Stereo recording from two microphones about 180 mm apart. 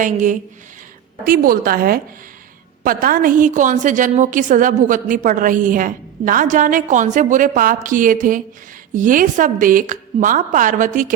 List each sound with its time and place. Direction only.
0.0 s a woman's voice: 45° right (ahead or behind)